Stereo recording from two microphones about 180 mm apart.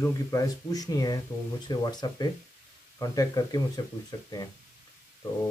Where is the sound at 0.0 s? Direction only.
20° left (ahead or behind).